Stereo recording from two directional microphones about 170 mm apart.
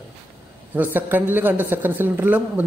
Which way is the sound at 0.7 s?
10° right (ahead or behind).